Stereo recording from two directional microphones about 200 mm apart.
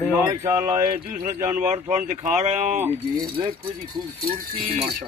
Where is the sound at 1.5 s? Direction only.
35° right (ahead or behind).